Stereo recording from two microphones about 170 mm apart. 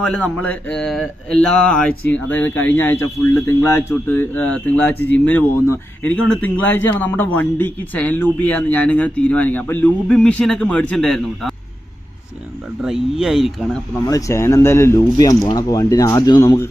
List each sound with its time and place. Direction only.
0.0 s speech: 5° left (ahead or behind)
12.8 s speech: centre (ahead or behind)
14.1 s speech: 20° left (ahead or behind)